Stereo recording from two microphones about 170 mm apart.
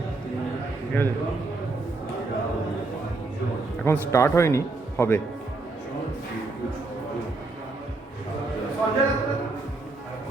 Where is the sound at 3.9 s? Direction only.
15° left (ahead or behind).